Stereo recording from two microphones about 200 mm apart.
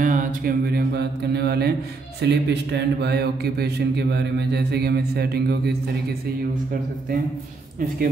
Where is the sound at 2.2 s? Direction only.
60° right (ahead or behind).